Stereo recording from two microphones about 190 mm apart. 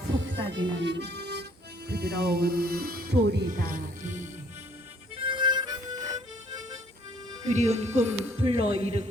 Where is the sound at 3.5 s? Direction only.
45° right (ahead or behind).